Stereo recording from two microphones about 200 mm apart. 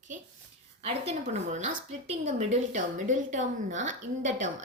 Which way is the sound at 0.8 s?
30° right (ahead or behind).